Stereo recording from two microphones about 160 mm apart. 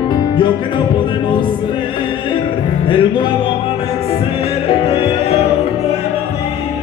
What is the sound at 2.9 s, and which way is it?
Music, 30° left (ahead or behind).